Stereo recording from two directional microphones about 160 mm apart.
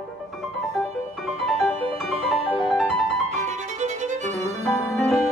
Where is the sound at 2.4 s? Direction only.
5° left (ahead or behind).